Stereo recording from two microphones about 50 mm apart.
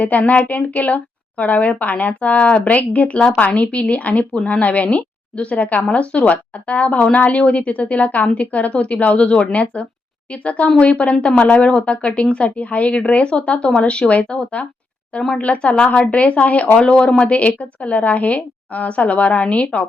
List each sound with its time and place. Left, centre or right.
0.2 s a woman's voice: left